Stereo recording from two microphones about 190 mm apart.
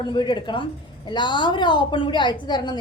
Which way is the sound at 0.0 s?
25° left (ahead or behind).